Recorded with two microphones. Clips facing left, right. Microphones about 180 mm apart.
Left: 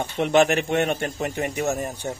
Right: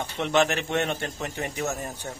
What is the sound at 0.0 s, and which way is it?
Speech, 15° left (ahead or behind).